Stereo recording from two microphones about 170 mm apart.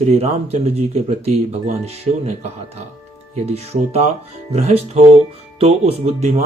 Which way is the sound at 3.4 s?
35° right (ahead or behind).